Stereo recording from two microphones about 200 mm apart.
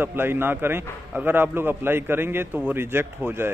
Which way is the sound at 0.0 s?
10° right (ahead or behind).